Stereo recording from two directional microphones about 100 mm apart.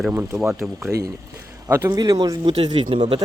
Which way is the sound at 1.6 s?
25° right (ahead or behind).